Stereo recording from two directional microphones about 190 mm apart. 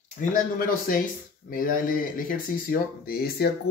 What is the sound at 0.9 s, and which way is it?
Speech, 50° left (ahead or behind).